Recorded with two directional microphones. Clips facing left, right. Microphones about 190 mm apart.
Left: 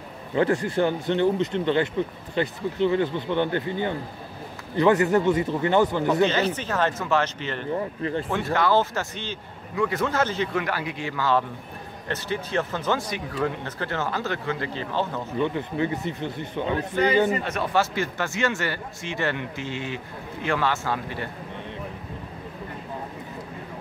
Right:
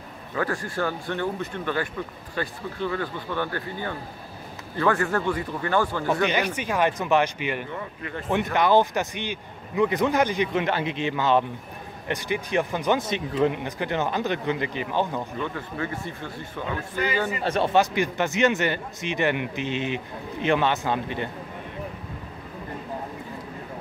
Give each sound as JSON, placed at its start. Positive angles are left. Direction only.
{"t": 0.3, "sound": "speech", "side_deg": 25}
{"t": 6.2, "sound": "speech", "side_deg": -15}
{"t": 7.7, "sound": "speech", "side_deg": 30}
{"t": 8.5, "sound": "a man's voice", "side_deg": -15}
{"t": 15.4, "sound": "speech", "side_deg": 20}
{"t": 17.4, "sound": "speech", "side_deg": -30}
{"t": 17.7, "sound": "a man's voice", "side_deg": -15}